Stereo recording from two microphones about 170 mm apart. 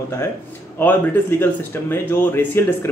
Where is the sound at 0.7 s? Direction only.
10° left (ahead or behind).